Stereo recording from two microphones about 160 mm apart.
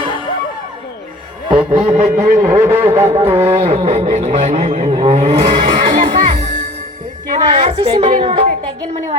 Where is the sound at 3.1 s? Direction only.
35° right (ahead or behind).